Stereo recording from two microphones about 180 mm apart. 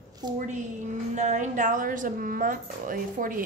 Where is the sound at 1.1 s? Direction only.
40° right (ahead or behind).